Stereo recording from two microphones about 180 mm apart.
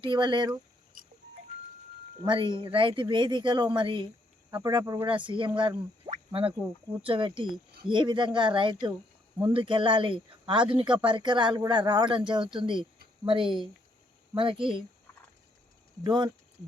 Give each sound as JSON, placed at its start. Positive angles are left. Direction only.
{"t": 0.0, "sound": "speech", "side_deg": -25}
{"t": 2.2, "sound": "speech", "side_deg": -25}
{"t": 6.1, "sound": "a sound", "side_deg": -30}
{"t": 7.0, "sound": "speech", "side_deg": -30}
{"t": 16.0, "sound": "speech", "side_deg": -25}